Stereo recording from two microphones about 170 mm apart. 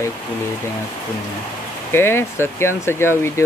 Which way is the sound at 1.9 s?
15° left (ahead or behind).